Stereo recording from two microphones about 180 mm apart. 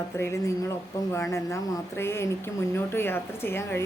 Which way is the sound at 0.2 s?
15° left (ahead or behind).